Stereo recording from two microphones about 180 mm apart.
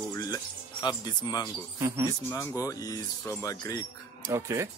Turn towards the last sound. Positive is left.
turn(degrees=-15)  # may be behind; listen again after turning